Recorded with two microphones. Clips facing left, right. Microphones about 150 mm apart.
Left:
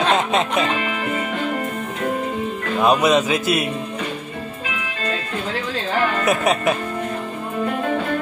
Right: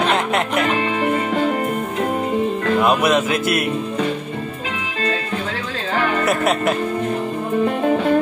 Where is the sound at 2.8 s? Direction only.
15° left (ahead or behind).